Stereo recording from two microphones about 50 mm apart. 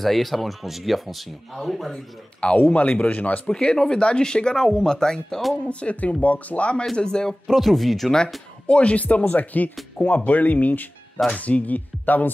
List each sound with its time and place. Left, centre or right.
0.0 s speech: centre
2.7 s speech: left
3.5 s speech: centre
5.6 s speech: left; by 8.2 s centre
8.6 s speech: left